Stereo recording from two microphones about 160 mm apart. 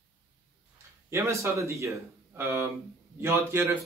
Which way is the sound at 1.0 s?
15° right (ahead or behind).